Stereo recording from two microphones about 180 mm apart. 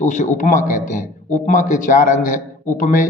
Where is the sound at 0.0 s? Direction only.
45° left (ahead or behind).